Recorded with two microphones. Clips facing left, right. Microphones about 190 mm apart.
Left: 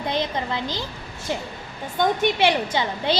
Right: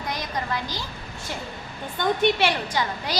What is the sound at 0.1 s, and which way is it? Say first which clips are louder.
Speech: left 3 dB; 25° left (ahead or behind).